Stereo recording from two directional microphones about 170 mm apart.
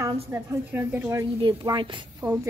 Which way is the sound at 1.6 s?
30° right (ahead or behind).